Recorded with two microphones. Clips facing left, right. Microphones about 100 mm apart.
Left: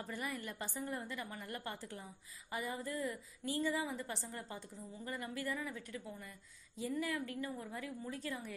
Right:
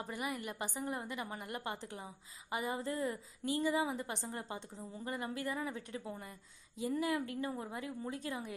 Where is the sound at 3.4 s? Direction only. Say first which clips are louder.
Right 4 dB; 20° right (ahead or behind).